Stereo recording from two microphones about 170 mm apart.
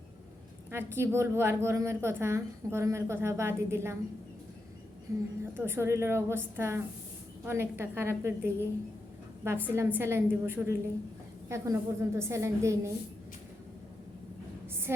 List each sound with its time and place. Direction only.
0.7 s a woman's voice: 15° right (ahead or behind)
5.1 s a woman's voice: 15° right (ahead or behind)
14.9 s a woman's voice: 15° right (ahead or behind)